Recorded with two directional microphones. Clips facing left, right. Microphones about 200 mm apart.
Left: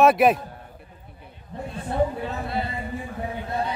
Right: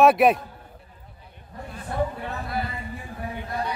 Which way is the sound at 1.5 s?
25° left (ahead or behind).